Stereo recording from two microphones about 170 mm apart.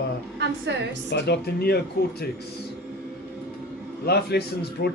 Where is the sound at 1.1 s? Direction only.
75° left (ahead or behind).